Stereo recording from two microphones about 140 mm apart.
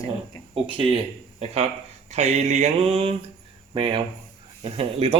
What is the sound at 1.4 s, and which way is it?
A man's voice, 50° right (ahead or behind).